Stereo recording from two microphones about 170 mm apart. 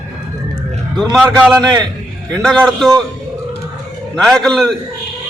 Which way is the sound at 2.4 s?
Centre (ahead or behind).